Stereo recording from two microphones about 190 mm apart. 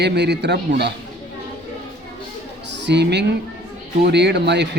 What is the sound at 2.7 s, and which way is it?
A man's voice, 65° right (ahead or behind).